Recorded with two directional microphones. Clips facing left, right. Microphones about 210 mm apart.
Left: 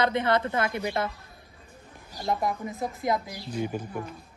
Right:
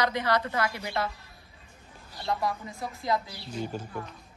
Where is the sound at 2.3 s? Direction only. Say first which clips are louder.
Left 2 dB; 20° left (ahead or behind).